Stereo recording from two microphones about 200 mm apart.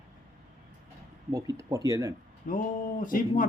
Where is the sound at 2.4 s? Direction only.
40° left (ahead or behind).